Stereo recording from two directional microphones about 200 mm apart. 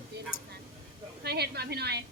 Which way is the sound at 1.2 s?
55° right (ahead or behind).